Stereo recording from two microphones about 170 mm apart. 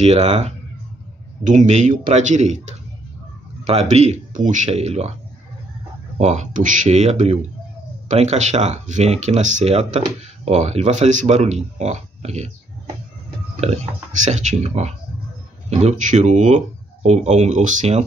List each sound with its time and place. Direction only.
0.0 s speech: 40° right (ahead or behind)
6.1 s speech: 45° right (ahead or behind)
14.1 s speech: 45° right (ahead or behind)